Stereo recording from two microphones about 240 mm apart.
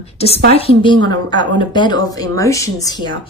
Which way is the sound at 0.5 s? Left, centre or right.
Left.